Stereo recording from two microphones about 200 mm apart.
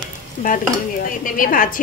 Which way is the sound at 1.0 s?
45° left (ahead or behind).